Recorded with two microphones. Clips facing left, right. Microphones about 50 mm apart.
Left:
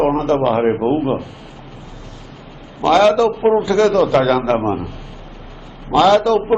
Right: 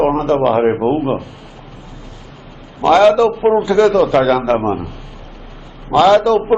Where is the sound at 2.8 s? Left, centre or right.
Centre.